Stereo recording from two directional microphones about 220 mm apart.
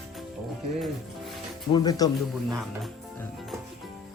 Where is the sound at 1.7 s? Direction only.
15° left (ahead or behind).